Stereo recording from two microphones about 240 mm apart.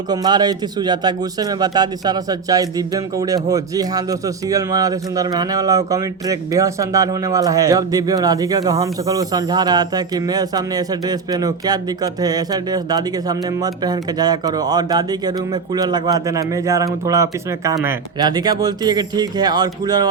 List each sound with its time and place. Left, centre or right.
0.1 s speech: centre